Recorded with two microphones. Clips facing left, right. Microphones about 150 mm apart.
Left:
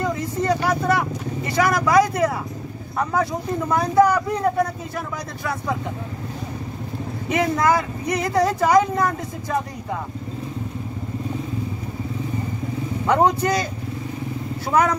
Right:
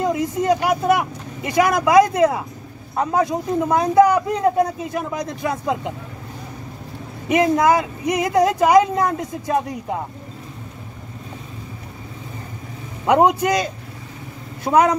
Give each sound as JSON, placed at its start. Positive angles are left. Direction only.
{"t": 0.0, "sound": "speech", "side_deg": -15}
{"t": 7.2, "sound": "speech", "side_deg": -15}
{"t": 13.0, "sound": "speech", "side_deg": -15}